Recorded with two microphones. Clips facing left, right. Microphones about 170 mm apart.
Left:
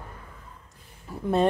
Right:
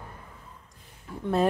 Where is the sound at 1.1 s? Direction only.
10° left (ahead or behind).